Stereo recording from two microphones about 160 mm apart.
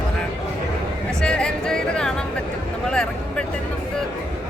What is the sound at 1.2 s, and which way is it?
Music, 5° left (ahead or behind).